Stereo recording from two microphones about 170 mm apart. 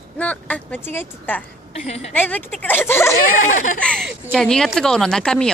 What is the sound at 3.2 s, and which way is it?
Speech, 50° left (ahead or behind).